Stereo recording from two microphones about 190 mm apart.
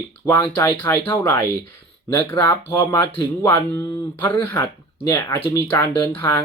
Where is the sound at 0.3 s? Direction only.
15° left (ahead or behind).